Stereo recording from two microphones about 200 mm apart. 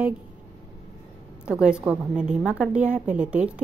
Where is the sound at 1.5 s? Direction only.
5° right (ahead or behind).